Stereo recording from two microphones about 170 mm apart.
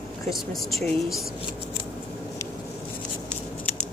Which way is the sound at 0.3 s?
Centre (ahead or behind).